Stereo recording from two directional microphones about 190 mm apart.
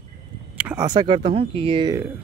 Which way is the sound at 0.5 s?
10° right (ahead or behind).